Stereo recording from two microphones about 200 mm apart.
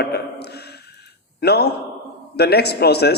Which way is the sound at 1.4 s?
55° left (ahead or behind).